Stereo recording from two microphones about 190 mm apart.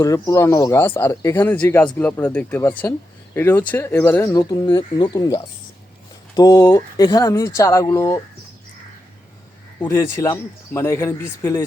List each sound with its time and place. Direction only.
0.0 s speech: 15° left (ahead or behind)
9.8 s speech: 15° left (ahead or behind)